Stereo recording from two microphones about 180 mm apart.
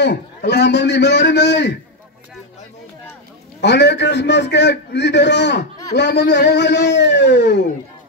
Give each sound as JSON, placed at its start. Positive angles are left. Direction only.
{"t": 0.0, "sound": "a man's voice", "side_deg": 65}
{"t": 3.6, "sound": "a man's voice", "side_deg": 70}